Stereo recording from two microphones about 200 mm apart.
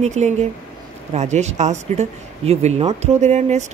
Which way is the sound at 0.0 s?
35° right (ahead or behind).